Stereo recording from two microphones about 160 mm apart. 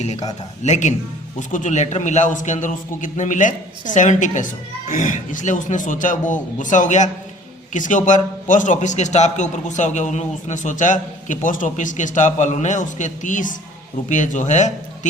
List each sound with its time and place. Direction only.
0.0 s a man's voice: 45° left (ahead or behind)